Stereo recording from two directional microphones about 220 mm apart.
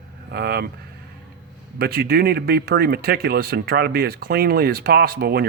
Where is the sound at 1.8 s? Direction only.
45° right (ahead or behind).